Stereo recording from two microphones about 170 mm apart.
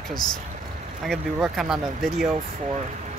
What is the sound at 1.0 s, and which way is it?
Speech, centre (ahead or behind).